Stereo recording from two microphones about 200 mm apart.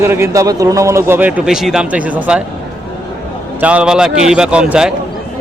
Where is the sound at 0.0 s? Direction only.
15° right (ahead or behind).